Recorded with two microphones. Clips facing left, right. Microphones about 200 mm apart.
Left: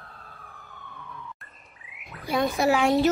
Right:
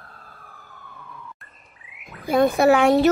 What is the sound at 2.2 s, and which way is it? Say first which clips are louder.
Speech: right 7 dB; 50° right (ahead or behind).